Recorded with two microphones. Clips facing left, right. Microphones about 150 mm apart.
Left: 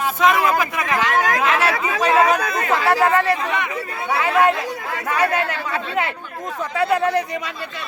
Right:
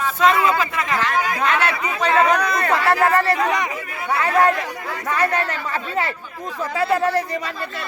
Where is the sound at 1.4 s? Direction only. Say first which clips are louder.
Left 1 dB; 5° left (ahead or behind).